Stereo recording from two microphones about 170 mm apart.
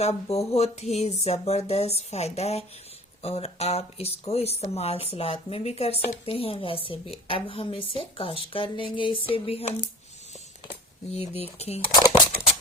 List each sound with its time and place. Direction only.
0.0 s speech: 40° left (ahead or behind)
11.1 s speech: 35° left (ahead or behind)
11.9 s a sound: 25° left (ahead or behind)